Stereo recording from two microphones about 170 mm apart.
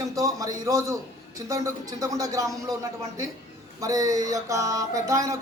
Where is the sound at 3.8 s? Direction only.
20° right (ahead or behind).